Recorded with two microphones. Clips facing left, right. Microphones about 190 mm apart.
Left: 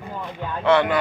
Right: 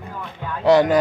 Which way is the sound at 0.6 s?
40° right (ahead or behind).